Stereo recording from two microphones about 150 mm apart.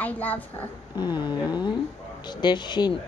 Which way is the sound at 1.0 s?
30° left (ahead or behind).